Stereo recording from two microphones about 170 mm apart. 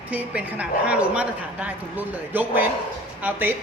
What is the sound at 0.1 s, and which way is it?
A woman's voice, 10° right (ahead or behind).